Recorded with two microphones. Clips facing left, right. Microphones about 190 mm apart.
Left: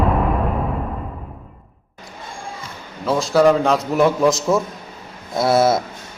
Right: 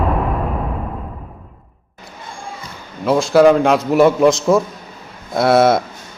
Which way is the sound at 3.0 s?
Centre (ahead or behind).